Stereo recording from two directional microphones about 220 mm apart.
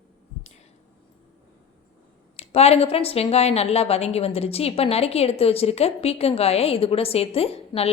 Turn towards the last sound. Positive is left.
turn(degrees=25)  # may be behind; listen again after turning